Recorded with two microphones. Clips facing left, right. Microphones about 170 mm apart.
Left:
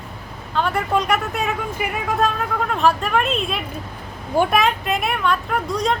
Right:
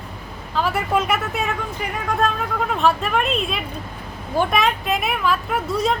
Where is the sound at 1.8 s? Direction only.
10° left (ahead or behind).